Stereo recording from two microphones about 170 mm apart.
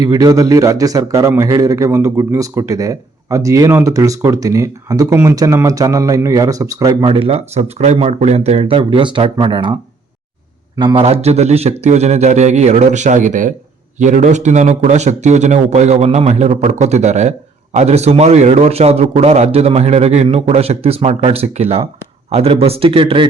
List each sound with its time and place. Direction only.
0.0 s a man's voice: 20° right (ahead or behind)
10.8 s a man's voice: 30° right (ahead or behind)